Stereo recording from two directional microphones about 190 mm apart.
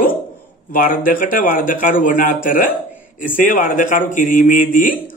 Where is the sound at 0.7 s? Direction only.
45° left (ahead or behind).